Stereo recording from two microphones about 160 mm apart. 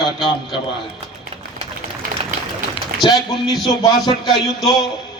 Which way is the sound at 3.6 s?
25° left (ahead or behind).